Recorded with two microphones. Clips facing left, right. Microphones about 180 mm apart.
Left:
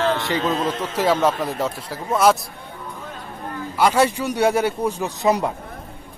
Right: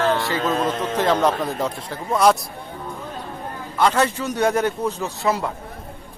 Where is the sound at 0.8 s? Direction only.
10° left (ahead or behind).